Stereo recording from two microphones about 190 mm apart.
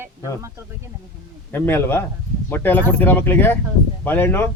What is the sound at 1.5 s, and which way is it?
A man's voice, 10° left (ahead or behind).